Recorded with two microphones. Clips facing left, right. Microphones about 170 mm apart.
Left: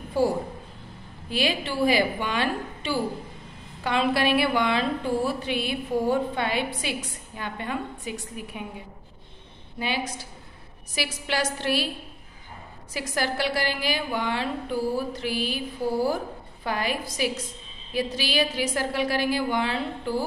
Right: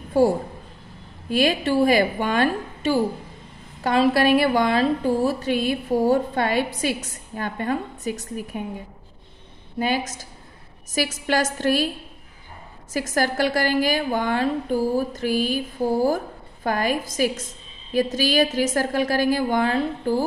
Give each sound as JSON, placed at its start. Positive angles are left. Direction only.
{"t": 1.3, "sound": "a woman's voice", "side_deg": -45}
{"t": 9.8, "sound": "a woman's voice", "side_deg": -45}
{"t": 12.9, "sound": "a woman's voice", "side_deg": -45}